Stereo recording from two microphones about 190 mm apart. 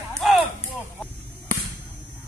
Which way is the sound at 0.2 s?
Centre (ahead or behind).